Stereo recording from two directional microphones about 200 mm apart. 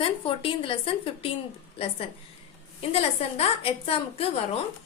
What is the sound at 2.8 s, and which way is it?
A woman's voice, 30° left (ahead or behind).